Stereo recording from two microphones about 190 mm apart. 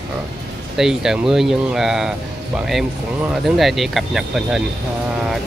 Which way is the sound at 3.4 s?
Centre (ahead or behind).